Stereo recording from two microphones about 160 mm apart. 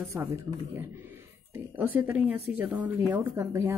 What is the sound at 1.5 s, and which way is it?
Speech, 10° right (ahead or behind).